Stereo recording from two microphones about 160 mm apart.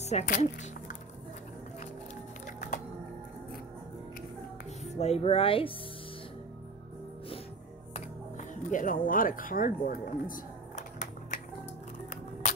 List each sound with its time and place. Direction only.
0.0 s speech: 45° left (ahead or behind)
2.4 s a sound: 55° left (ahead or behind)
4.8 s speech: 40° left (ahead or behind)
7.9 s music: 50° left (ahead or behind)